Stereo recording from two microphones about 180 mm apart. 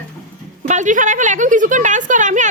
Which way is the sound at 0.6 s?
45° right (ahead or behind).